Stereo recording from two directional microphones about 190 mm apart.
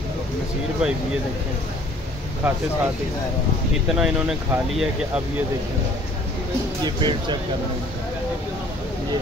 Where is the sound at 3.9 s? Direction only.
5° right (ahead or behind).